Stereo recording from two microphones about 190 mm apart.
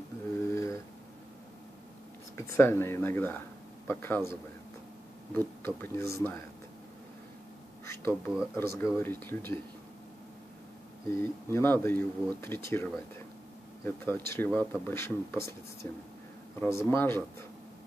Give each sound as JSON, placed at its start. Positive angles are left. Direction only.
{"t": 0.5, "sound": "a sound", "side_deg": 15}
{"t": 2.3, "sound": "speech", "side_deg": 15}
{"t": 5.6, "sound": "speech", "side_deg": 10}
{"t": 7.8, "sound": "speech", "side_deg": 15}
{"t": 11.1, "sound": "a man's voice", "side_deg": 15}